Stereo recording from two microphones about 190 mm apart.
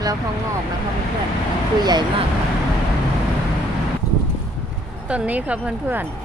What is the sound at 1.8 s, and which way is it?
Speech, 20° right (ahead or behind).